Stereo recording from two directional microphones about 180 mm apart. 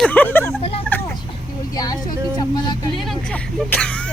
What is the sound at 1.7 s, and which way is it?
Speech, 20° left (ahead or behind).